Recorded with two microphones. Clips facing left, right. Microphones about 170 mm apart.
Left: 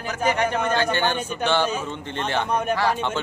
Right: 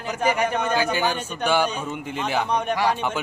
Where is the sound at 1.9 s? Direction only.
5° right (ahead or behind).